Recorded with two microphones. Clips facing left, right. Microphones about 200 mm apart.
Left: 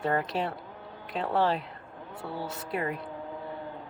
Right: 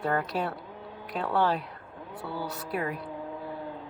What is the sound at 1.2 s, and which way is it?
Speech, 25° left (ahead or behind).